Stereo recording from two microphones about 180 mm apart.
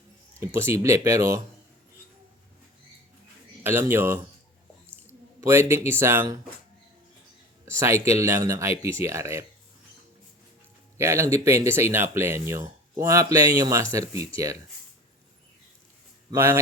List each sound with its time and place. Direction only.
0.3 s speech: 15° right (ahead or behind)
3.6 s speech: 15° right (ahead or behind)
5.4 s speech: 15° right (ahead or behind)
7.6 s speech: 15° right (ahead or behind)
10.9 s speech: 15° right (ahead or behind)
16.3 s speech: 15° right (ahead or behind)